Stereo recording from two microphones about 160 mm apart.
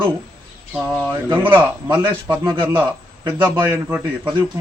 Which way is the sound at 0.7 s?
10° right (ahead or behind).